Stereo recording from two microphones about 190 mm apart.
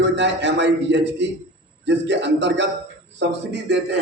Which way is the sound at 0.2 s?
65° right (ahead or behind).